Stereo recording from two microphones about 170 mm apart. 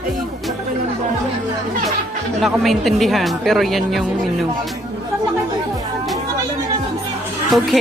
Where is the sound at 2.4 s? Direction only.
Centre (ahead or behind).